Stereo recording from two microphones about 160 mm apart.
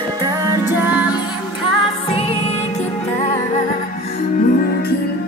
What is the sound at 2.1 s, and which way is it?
Music, 40° left (ahead or behind).